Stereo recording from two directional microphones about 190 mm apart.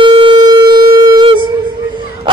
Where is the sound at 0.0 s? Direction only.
25° right (ahead or behind).